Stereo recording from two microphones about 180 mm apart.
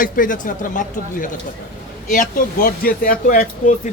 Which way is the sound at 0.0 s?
50° left (ahead or behind).